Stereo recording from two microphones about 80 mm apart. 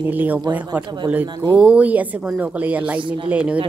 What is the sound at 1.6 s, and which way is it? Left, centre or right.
A woman's voice, centre.